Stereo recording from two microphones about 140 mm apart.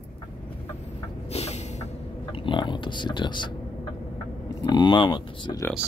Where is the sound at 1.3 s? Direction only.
50° left (ahead or behind).